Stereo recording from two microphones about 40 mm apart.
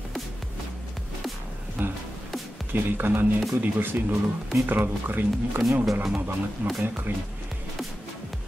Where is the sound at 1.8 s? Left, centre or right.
Right.